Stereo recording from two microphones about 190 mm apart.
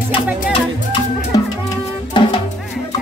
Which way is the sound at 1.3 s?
20° left (ahead or behind).